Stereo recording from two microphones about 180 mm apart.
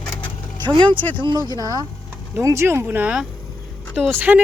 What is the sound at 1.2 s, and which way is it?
Speech, 25° right (ahead or behind).